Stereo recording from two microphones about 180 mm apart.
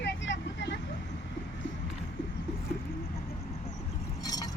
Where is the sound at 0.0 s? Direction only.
85° left.